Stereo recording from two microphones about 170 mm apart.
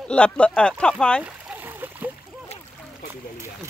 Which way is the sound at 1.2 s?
10° right (ahead or behind).